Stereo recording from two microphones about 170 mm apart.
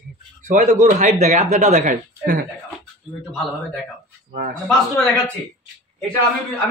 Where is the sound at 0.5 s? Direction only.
50° right (ahead or behind).